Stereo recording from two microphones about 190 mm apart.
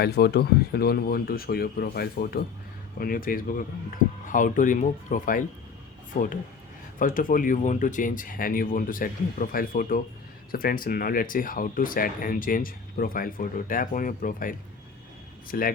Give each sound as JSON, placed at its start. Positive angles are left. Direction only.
{"t": 0.0, "sound": "speech", "side_deg": 60}